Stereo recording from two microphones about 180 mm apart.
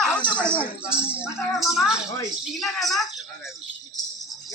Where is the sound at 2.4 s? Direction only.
Centre (ahead or behind).